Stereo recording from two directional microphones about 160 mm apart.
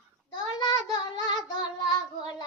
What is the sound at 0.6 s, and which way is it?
Child singing, 25° left (ahead or behind).